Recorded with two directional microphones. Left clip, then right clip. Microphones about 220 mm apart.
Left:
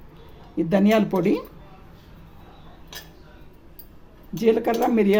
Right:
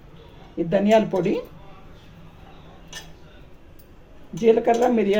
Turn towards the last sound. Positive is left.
turn(degrees=90)